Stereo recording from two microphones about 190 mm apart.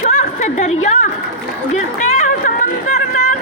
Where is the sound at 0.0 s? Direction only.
40° left (ahead or behind).